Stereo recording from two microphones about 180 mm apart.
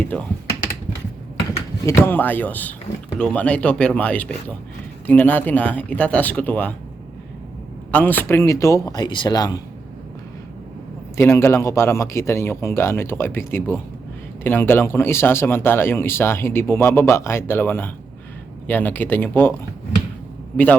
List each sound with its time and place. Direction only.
0.0 s speech: 10° left (ahead or behind)
1.9 s speech: 10° left (ahead or behind)
7.9 s speech: 10° left (ahead or behind)
11.2 s speech: 15° left (ahead or behind)